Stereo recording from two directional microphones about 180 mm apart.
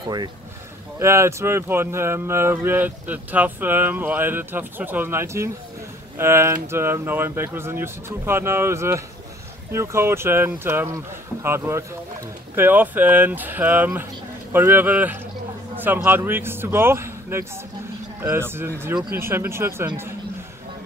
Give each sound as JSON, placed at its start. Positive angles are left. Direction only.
{"t": 0.0, "sound": "speech", "side_deg": -25}